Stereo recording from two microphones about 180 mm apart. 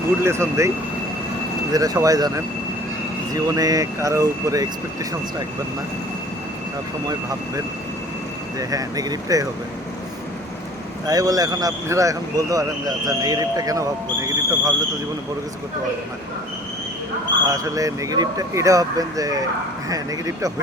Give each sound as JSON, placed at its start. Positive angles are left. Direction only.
{"t": 0.2, "sound": "speech", "side_deg": -15}
{"t": 1.7, "sound": "speech", "side_deg": -20}
{"t": 8.5, "sound": "speech", "side_deg": -20}
{"t": 11.0, "sound": "speech", "side_deg": -20}
{"t": 17.4, "sound": "speech", "side_deg": -20}